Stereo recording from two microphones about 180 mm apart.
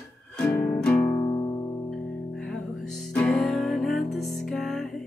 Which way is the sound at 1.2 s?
30° left (ahead or behind).